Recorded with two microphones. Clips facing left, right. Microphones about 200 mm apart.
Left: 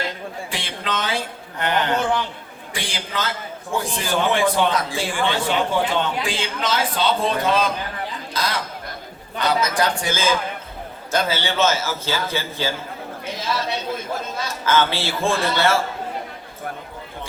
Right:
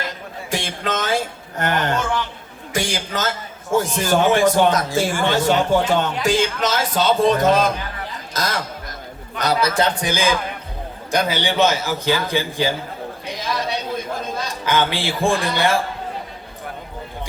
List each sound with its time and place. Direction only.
0.5 s a man's voice: 45° right (ahead or behind); by 12.7 s 15° right (ahead or behind)
13.2 s chatter: 15° right (ahead or behind)
14.4 s a man's voice: 15° right (ahead or behind)